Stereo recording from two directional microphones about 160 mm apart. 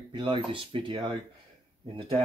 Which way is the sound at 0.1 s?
30° right (ahead or behind).